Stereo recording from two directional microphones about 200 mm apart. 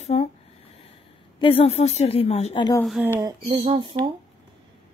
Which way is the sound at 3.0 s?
15° right (ahead or behind).